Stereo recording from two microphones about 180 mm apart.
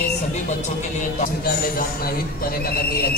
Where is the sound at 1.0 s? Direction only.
50° left (ahead or behind).